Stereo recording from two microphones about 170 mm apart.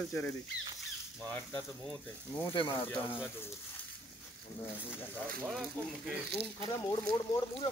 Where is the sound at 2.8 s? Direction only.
10° left (ahead or behind).